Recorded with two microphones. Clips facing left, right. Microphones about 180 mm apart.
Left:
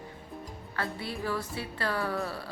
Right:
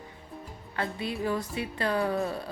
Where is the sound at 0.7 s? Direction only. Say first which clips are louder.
Right 3 dB; 20° right (ahead or behind).